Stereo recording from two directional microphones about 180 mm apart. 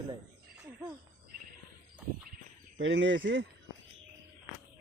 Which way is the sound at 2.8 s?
90° right.